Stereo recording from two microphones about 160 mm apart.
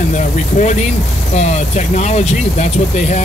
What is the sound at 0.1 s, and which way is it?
Speech, 50° left (ahead or behind).